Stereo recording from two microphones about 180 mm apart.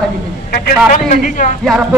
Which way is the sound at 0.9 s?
45° left (ahead or behind).